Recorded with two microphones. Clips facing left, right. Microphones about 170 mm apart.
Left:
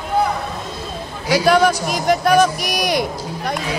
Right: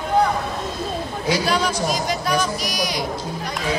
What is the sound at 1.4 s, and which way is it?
A man's voice, 55° left (ahead or behind).